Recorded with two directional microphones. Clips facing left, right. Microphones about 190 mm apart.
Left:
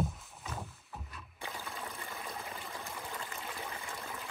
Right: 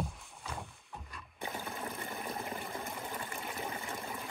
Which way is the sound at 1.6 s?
15° right (ahead or behind).